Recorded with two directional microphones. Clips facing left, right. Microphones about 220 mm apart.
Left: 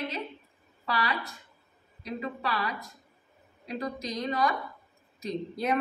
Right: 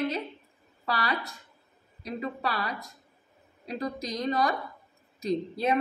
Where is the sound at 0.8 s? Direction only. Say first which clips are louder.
Even; 40° right (ahead or behind).